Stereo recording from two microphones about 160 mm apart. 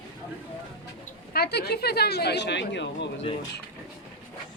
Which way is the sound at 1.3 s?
85° left.